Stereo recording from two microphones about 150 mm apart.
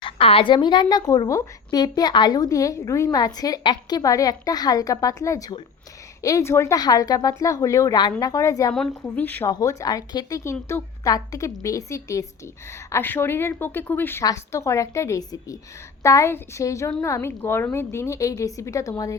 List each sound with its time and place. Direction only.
0.0 s a woman's voice: 40° left (ahead or behind); by 9.5 s 10° left (ahead or behind)
9.5 s a woman's voice: 25° left (ahead or behind)